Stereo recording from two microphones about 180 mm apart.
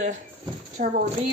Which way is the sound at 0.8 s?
45° right (ahead or behind).